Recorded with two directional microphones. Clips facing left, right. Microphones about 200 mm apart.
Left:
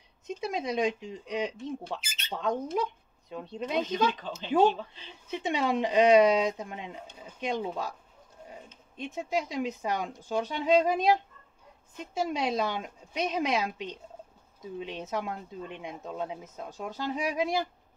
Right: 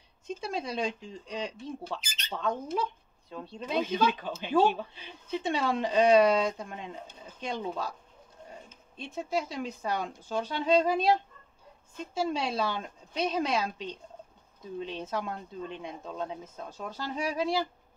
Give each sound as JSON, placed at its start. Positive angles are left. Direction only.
{"t": 0.4, "sound": "speech", "side_deg": 15}
{"t": 2.0, "sound": "bird", "side_deg": 5}
{"t": 2.4, "sound": "speech", "side_deg": 15}
{"t": 4.6, "sound": "speech", "side_deg": -10}
{"t": 5.3, "sound": "speech", "side_deg": 15}
{"t": 8.9, "sound": "speech", "side_deg": 15}